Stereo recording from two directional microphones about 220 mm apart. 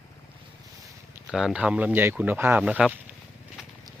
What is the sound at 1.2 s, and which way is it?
Speech, centre (ahead or behind).